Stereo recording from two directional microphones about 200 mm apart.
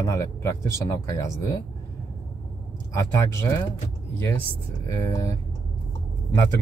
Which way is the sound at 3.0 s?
15° left (ahead or behind).